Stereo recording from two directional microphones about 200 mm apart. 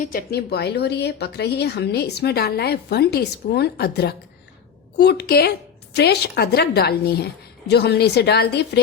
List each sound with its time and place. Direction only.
0.0 s a woman's voice: 50° left (ahead or behind)